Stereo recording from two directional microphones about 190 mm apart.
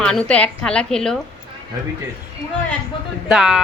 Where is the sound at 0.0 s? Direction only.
5° left (ahead or behind).